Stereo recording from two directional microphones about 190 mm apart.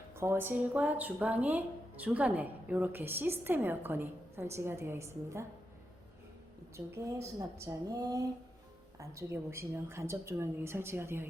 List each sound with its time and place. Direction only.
0.1 s speech: 10° right (ahead or behind)
6.7 s speech: 15° right (ahead or behind)